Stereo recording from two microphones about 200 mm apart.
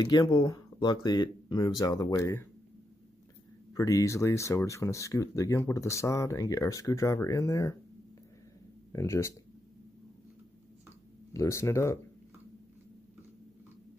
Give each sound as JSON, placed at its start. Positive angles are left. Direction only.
{"t": 0.0, "sound": "speech", "side_deg": 20}
{"t": 3.7, "sound": "speech", "side_deg": 15}
{"t": 8.9, "sound": "speech", "side_deg": 15}
{"t": 11.3, "sound": "speech", "side_deg": 15}